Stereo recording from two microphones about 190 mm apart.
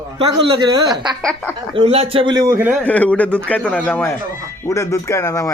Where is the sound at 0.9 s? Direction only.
Centre (ahead or behind).